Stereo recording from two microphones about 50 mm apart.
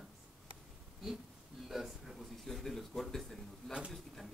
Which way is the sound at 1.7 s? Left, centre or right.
Centre.